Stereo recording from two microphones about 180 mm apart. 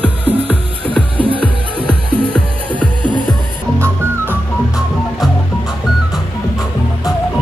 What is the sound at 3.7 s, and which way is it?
Music, 15° right (ahead or behind).